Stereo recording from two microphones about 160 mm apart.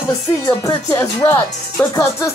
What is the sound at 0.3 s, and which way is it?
Speech, 25° left (ahead or behind).